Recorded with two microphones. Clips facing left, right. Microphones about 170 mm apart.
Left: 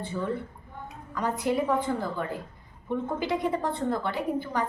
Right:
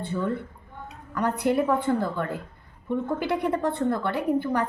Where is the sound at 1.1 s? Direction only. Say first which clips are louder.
Right 3 dB; 60° right (ahead or behind).